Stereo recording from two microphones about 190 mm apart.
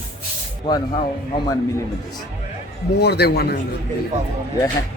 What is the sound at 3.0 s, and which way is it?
Speech, 60° left (ahead or behind).